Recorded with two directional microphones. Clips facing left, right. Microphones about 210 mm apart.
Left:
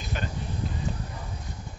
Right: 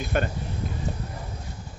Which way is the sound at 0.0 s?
55° right (ahead or behind).